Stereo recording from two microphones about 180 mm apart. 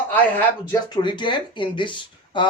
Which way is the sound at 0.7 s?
25° left (ahead or behind).